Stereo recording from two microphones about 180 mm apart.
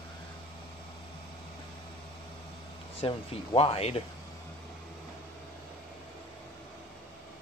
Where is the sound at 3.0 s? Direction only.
30° left (ahead or behind).